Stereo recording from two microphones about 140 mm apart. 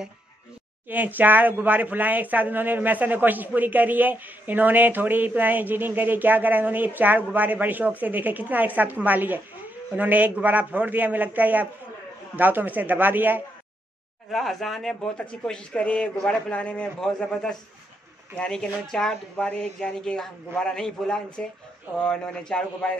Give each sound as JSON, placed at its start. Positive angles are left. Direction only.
{"t": 0.8, "sound": "speech", "side_deg": -15}
{"t": 14.3, "sound": "speech", "side_deg": 0}